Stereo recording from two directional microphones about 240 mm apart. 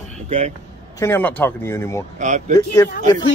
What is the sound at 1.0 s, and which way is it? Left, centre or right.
Speech, centre.